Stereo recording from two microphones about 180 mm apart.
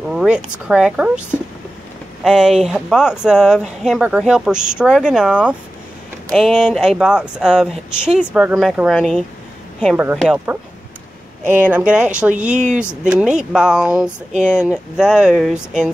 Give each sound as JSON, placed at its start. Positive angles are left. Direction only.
{"t": 0.1, "sound": "speech", "side_deg": -5}
{"t": 2.2, "sound": "speech", "side_deg": -5}
{"t": 12.5, "sound": "speech", "side_deg": -40}
{"t": 13.0, "sound": "speech", "side_deg": -5}